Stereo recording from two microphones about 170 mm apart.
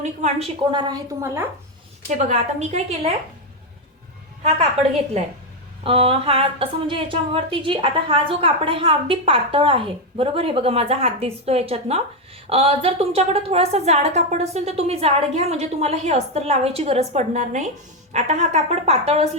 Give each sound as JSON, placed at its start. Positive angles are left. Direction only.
{"t": 0.0, "sound": "speech", "side_deg": -40}
{"t": 1.2, "sound": "speech", "side_deg": -15}
{"t": 2.0, "sound": "a woman's voice", "side_deg": -45}
{"t": 5.2, "sound": "speech", "side_deg": -40}